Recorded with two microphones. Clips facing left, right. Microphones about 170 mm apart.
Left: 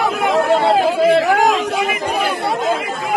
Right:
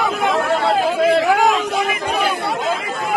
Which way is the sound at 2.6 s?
40° left (ahead or behind).